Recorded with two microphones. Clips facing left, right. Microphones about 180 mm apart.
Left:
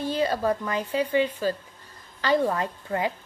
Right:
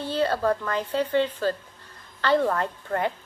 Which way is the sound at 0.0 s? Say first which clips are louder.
Right 1 dB; 15° left (ahead or behind).